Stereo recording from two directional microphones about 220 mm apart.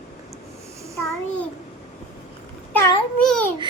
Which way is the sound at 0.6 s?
15° right (ahead or behind).